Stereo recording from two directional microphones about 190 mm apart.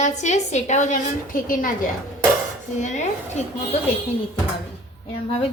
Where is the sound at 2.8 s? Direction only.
40° left (ahead or behind).